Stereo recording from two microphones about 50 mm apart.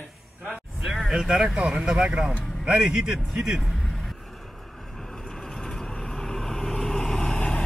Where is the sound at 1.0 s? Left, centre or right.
Centre.